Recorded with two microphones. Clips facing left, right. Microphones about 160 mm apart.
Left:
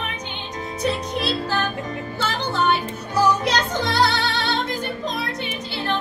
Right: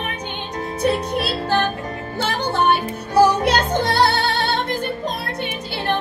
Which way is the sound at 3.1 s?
55° right (ahead or behind).